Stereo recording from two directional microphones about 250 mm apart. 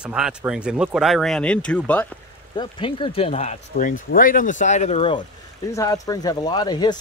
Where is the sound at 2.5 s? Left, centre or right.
Centre.